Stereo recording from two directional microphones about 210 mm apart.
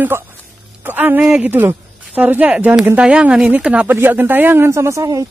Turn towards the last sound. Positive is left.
turn(degrees=-15)  # may be behind; listen again after turning